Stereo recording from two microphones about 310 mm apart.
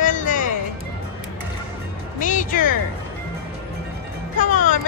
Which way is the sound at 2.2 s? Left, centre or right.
Left.